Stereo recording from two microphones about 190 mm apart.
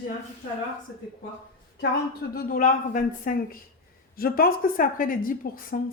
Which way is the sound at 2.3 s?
50° left (ahead or behind).